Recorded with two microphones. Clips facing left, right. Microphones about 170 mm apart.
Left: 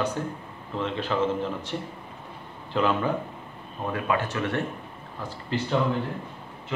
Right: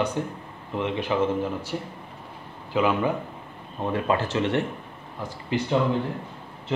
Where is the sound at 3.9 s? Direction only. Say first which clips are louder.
Right 3 dB; 30° right (ahead or behind).